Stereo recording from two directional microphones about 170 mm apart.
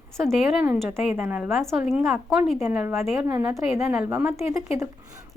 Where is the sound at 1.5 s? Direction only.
Centre (ahead or behind).